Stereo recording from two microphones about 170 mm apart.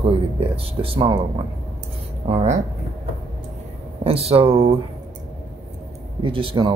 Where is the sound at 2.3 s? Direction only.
40° right (ahead or behind).